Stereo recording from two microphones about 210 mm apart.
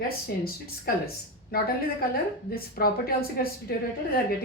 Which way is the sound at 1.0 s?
45° left (ahead or behind).